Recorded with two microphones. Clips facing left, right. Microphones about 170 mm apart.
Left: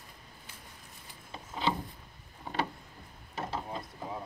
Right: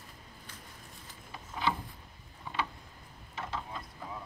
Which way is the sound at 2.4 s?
40° left (ahead or behind).